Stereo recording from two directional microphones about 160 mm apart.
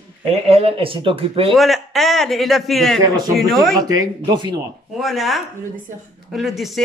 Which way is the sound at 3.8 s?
25° right (ahead or behind).